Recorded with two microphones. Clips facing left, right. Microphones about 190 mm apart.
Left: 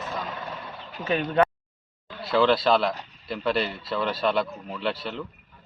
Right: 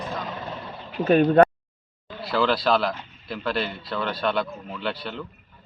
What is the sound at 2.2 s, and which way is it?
Speech, centre (ahead or behind).